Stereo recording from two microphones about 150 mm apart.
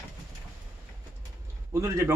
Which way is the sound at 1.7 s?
20° right (ahead or behind).